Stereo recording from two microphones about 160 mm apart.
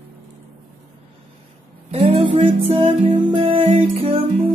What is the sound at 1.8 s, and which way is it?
Music, 35° right (ahead or behind).